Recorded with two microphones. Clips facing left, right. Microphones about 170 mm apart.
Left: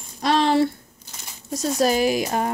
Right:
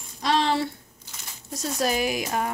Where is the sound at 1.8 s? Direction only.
35° left (ahead or behind).